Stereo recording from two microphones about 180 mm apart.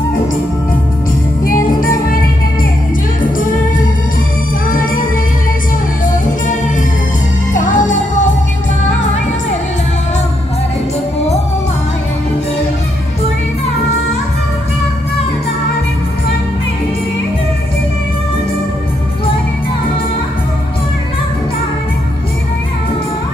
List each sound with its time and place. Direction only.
1.4 s music: 50° left (ahead or behind)
3.3 s music: 50° left (ahead or behind)
6.0 s music: 45° left (ahead or behind)